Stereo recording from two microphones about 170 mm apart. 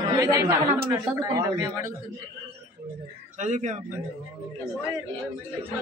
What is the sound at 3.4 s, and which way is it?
Speech, 45° right (ahead or behind).